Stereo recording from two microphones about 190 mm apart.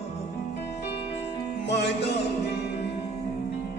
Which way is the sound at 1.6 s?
65° left (ahead or behind).